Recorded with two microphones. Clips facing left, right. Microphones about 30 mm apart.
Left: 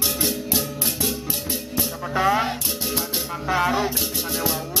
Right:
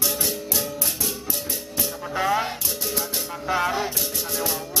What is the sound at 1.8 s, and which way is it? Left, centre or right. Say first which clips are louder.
Music: left 3 dB; centre.